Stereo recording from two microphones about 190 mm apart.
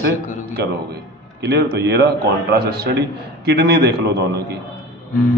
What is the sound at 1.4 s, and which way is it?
A man's voice, 55° right (ahead or behind).